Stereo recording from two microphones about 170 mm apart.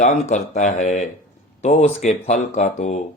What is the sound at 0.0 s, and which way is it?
Speech, 45° left (ahead or behind).